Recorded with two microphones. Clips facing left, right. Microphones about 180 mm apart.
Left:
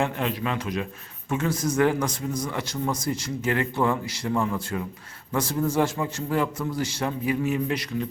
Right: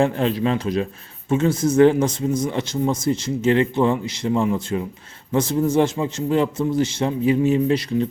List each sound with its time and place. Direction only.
0.0 s a man's voice: 30° right (ahead or behind)